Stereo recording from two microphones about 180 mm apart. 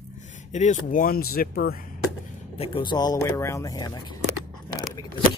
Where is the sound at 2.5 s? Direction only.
25° left (ahead or behind).